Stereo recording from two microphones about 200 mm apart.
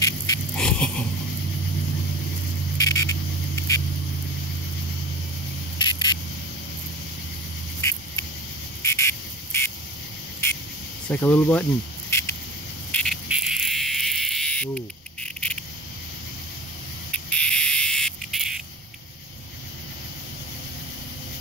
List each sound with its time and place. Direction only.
0.6 s a sound: 5° left (ahead or behind)
2.8 s cricket: 15° left (ahead or behind)
5.8 s spray: 20° left (ahead or behind)
8.8 s cricket: 15° left (ahead or behind)
11.1 s speech: 10° left (ahead or behind)
12.1 s patter: 10° left (ahead or behind)
12.9 s insect: centre (ahead or behind)
17.1 s a sound: 5° left (ahead or behind)